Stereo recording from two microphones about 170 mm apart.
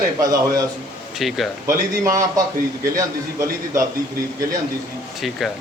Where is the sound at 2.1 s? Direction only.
20° right (ahead or behind).